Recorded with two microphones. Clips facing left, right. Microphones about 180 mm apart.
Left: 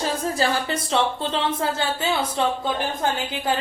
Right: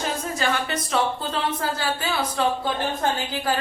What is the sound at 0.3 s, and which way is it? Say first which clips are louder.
A woman's voice: left 2 dB; 30° left (ahead or behind).